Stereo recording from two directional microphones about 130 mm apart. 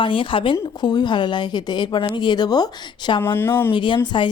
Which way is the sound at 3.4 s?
15° left (ahead or behind).